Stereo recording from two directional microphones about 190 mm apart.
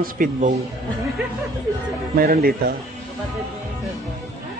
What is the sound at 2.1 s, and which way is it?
Speech, 55° right (ahead or behind).